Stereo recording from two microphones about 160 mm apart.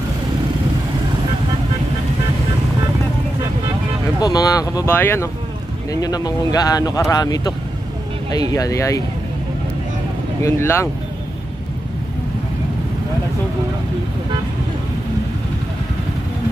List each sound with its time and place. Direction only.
4.2 s speech: 25° left (ahead or behind)
10.4 s speech: 15° left (ahead or behind)